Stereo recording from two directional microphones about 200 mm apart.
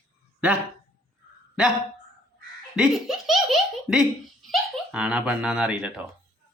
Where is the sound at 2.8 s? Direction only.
Centre (ahead or behind).